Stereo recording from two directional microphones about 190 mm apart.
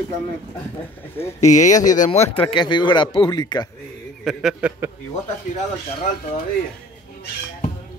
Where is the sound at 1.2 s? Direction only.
40° left (ahead or behind); by 3.6 s 20° left (ahead or behind).